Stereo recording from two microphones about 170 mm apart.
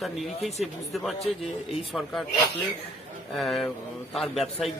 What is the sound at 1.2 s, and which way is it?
Speech, 35° left (ahead or behind).